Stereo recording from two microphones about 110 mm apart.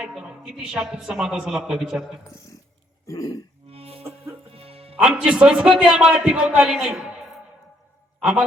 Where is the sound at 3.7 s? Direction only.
65° right (ahead or behind).